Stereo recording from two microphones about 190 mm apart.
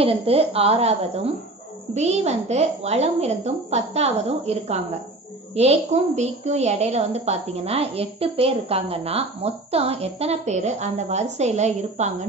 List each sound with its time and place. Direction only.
0.0 s a woman's voice: 30° right (ahead or behind)